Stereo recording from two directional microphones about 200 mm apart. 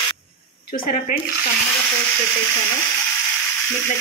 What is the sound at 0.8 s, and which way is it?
Speech, 45° left (ahead or behind).